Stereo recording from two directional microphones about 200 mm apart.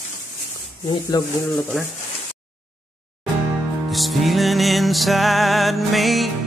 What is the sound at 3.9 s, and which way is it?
Music, centre (ahead or behind).